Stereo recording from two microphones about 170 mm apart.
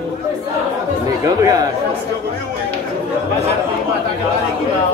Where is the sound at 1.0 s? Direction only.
20° right (ahead or behind).